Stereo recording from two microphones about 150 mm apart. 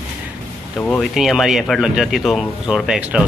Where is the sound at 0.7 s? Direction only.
10° left (ahead or behind).